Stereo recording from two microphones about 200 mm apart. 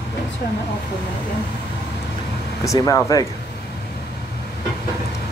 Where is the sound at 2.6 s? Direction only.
15° left (ahead or behind).